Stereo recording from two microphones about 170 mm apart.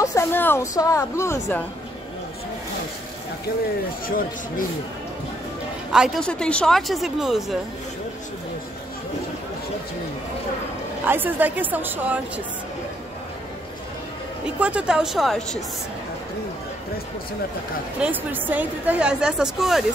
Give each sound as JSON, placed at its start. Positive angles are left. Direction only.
{"t": 0.0, "sound": "a woman's voice", "side_deg": 15}
{"t": 5.9, "sound": "a woman's voice", "side_deg": -5}
{"t": 11.1, "sound": "a woman's voice", "side_deg": -10}
{"t": 14.4, "sound": "a woman's voice", "side_deg": -5}
{"t": 18.0, "sound": "a woman's voice", "side_deg": -10}